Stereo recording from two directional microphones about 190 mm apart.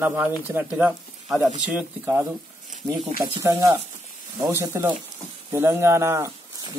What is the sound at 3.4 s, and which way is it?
Speech, 15° right (ahead or behind).